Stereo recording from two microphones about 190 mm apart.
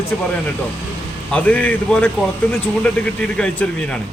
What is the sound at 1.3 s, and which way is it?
Speech, 10° left (ahead or behind).